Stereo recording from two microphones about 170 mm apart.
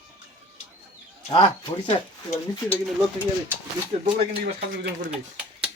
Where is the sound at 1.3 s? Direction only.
30° left (ahead or behind).